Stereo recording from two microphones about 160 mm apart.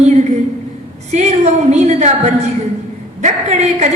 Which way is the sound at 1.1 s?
45° right (ahead or behind).